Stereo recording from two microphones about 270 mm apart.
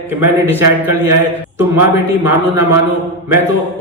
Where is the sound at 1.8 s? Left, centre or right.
Centre.